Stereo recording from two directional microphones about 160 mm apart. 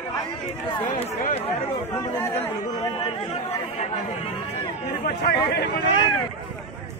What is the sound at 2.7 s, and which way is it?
Speech, 30° left (ahead or behind).